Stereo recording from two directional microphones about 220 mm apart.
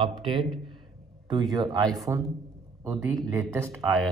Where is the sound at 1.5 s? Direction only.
20° right (ahead or behind).